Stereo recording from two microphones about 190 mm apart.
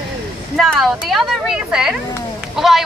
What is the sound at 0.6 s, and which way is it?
A woman's voice, centre (ahead or behind).